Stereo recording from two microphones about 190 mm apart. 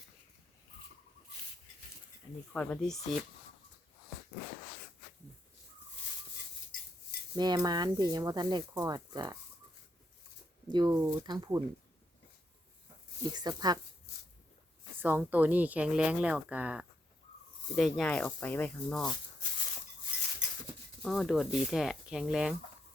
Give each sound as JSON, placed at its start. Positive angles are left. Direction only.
{"t": 2.5, "sound": "speech", "side_deg": 5}
{"t": 7.3, "sound": "speech", "side_deg": -20}
{"t": 10.7, "sound": "speech", "side_deg": -20}
{"t": 13.3, "sound": "speech", "side_deg": -20}
{"t": 15.0, "sound": "speech", "side_deg": -10}
{"t": 21.0, "sound": "speech", "side_deg": 0}